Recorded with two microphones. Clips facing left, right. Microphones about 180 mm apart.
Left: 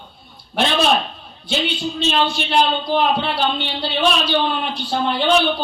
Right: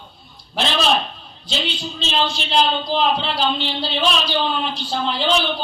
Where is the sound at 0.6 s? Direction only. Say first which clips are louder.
Left 2 dB; 60° left (ahead or behind).